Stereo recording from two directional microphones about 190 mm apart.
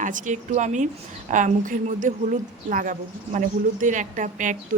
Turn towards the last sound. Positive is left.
turn(degrees=-40)  # may be behind; listen again after turning